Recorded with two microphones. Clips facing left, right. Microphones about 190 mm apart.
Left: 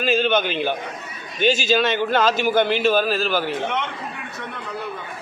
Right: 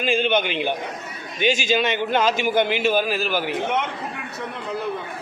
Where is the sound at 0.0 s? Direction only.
15° right (ahead or behind).